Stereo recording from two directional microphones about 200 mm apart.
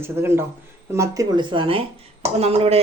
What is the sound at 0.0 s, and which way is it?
Speech, 10° right (ahead or behind).